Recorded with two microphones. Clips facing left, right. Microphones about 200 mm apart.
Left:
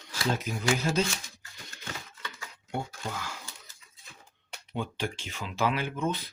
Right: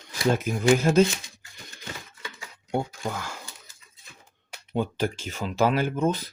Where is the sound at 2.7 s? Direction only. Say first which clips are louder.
Right 7 dB; 50° right (ahead or behind).